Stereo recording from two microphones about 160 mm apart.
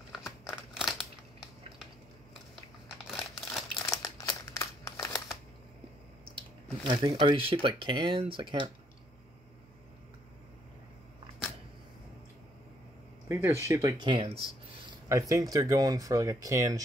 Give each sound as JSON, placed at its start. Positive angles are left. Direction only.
{"t": 0.7, "sound": "crumpling", "side_deg": 0}
{"t": 3.1, "sound": "crumpling", "side_deg": 0}
{"t": 3.8, "sound": "crumpling", "side_deg": 20}
{"t": 6.3, "sound": "speech", "side_deg": -30}
{"t": 13.3, "sound": "speech", "side_deg": -15}